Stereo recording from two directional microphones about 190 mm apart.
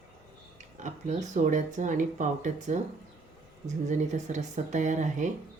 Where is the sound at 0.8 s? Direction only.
40° right (ahead or behind).